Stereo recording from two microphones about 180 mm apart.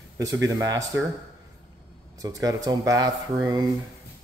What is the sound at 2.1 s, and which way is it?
Speech, 20° right (ahead or behind).